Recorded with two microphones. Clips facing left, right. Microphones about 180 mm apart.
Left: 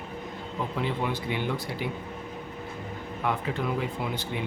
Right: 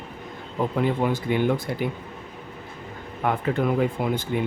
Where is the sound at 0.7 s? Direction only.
50° right (ahead or behind).